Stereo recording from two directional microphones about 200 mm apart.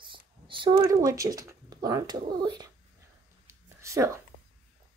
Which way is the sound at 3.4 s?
15° right (ahead or behind).